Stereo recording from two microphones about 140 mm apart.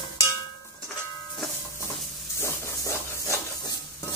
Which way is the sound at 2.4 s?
20° left (ahead or behind).